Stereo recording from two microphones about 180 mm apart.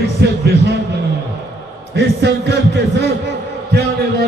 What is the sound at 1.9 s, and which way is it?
Speech, 70° right (ahead or behind).